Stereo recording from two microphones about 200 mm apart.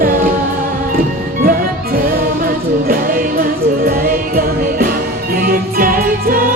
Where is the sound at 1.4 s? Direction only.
45° right (ahead or behind).